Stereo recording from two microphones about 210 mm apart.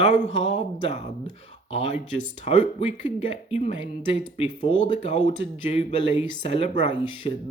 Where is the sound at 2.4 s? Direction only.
30° left (ahead or behind).